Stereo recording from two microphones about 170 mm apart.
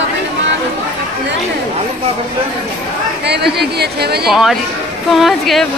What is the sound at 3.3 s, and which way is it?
Speech, 75° right (ahead or behind).